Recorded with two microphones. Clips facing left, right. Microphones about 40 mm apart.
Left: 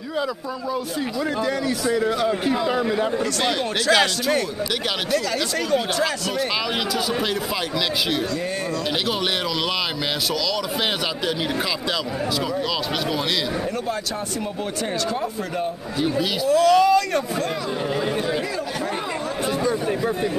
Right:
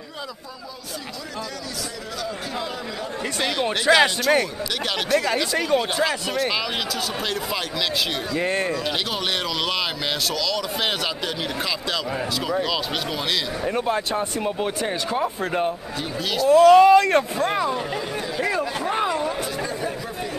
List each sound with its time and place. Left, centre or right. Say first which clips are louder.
4.0 s a man's voice: right 2 dB; centre
16.0 s speech: left 4 dB; centre
16.4 s speech: right 5 dB; right